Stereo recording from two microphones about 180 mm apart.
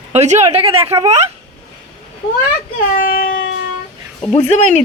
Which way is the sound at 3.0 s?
50° left (ahead or behind).